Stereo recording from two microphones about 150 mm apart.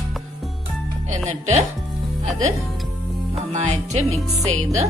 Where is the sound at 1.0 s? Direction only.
50° right (ahead or behind).